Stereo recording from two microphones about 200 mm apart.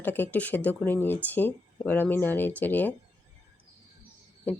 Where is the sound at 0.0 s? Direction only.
10° left (ahead or behind).